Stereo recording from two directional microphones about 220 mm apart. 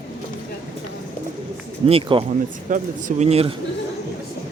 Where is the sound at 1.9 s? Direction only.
25° right (ahead or behind).